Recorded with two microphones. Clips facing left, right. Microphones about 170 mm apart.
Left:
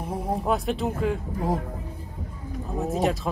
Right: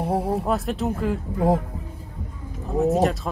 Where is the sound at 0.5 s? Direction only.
Centre (ahead or behind).